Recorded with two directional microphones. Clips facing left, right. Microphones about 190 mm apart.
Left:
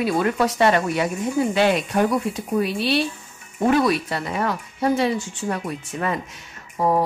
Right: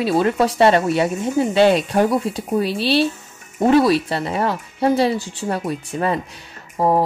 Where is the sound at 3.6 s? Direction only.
30° right (ahead or behind).